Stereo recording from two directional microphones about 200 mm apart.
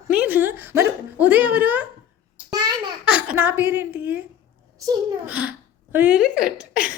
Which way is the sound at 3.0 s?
5° right (ahead or behind).